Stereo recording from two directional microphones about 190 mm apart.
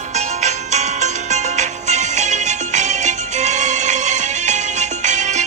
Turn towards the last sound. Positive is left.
turn(degrees=-40)  # may be behind; listen again after turning